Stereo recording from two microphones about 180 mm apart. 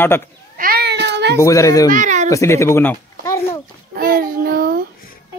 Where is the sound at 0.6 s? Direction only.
60° right (ahead or behind).